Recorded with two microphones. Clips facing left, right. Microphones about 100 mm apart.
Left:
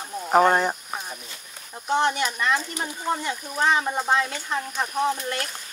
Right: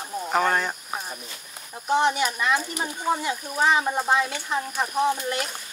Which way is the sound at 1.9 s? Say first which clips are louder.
Right 1 dB; 5° right (ahead or behind).